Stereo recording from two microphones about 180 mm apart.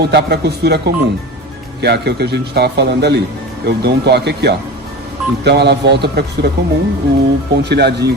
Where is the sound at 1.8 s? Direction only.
65° right (ahead or behind).